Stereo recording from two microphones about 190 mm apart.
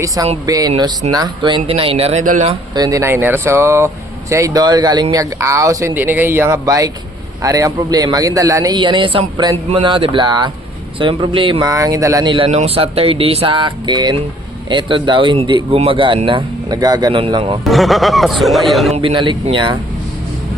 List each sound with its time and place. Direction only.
0.4 s speech: 20° right (ahead or behind); by 2.5 s 40° right (ahead or behind)
2.5 s speech: 20° right (ahead or behind)
17.6 s a man's voice: centre (ahead or behind)
18.9 s speech: 30° right (ahead or behind)